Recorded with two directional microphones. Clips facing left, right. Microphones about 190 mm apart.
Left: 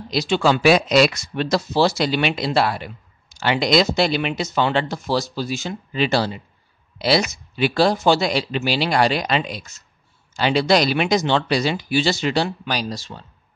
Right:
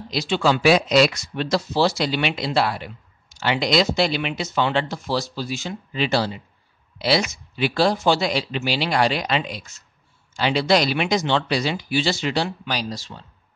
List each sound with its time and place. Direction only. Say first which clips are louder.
0.1 s speech: left 2 dB; 45° left (ahead or behind)